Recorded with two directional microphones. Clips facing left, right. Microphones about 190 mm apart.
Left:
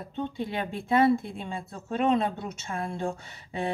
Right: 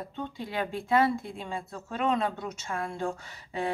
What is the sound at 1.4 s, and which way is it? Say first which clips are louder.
A woman's voice: even; 25° left (ahead or behind).